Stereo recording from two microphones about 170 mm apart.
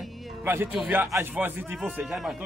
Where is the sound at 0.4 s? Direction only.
15° right (ahead or behind).